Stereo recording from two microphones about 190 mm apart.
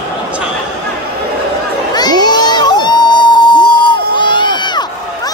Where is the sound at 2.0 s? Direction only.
20° left (ahead or behind).